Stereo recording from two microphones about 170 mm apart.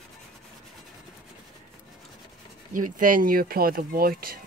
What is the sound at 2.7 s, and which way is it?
Speech, 50° right (ahead or behind).